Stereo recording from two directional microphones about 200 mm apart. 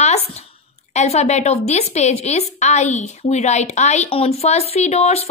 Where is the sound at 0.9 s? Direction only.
35° left (ahead or behind).